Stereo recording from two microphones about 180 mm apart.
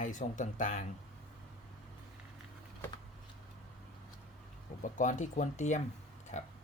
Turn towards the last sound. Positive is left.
turn(degrees=40)  # may be behind; listen again after turning